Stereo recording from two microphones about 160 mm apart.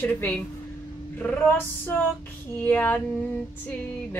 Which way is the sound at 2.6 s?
10° left (ahead or behind).